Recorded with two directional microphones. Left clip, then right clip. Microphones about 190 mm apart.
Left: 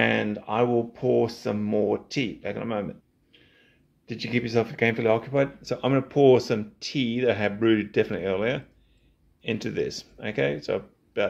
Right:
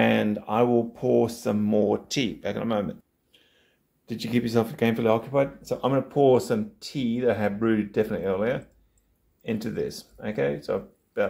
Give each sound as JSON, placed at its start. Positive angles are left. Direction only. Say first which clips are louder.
{"t": 0.0, "sound": "speech", "louder": "right 1 dB", "side_deg": 0}